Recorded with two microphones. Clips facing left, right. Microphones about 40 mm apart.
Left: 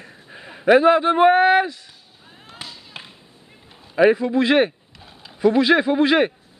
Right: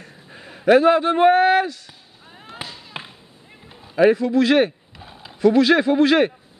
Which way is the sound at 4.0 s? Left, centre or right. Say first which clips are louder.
Even; centre.